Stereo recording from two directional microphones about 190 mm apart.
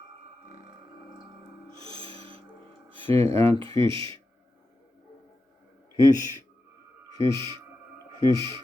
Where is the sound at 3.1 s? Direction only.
30° right (ahead or behind).